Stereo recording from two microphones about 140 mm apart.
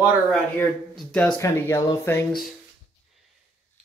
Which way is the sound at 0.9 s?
5° left (ahead or behind).